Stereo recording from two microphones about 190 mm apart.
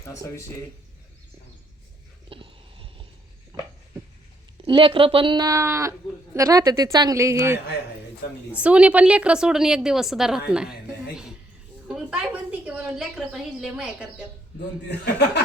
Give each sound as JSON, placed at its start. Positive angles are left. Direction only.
{"t": 0.0, "sound": "speech", "side_deg": 15}
{"t": 2.3, "sound": "a sound", "side_deg": -30}
{"t": 4.6, "sound": "a woman's voice", "side_deg": -25}
{"t": 14.8, "sound": "speech", "side_deg": 60}